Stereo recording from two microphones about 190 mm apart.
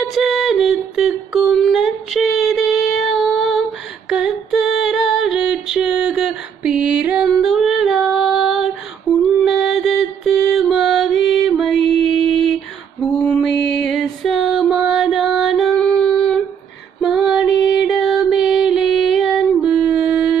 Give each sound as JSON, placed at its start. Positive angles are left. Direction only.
{"t": 0.1, "sound": "a sound", "side_deg": 0}
{"t": 9.4, "sound": "music", "side_deg": 0}
{"t": 12.3, "sound": "mantra", "side_deg": 0}
{"t": 13.2, "sound": "music", "side_deg": 5}
{"t": 17.0, "sound": "female singing", "side_deg": 0}